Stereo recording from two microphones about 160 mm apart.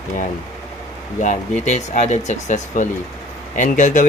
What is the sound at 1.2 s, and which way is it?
Speech, 50° left (ahead or behind).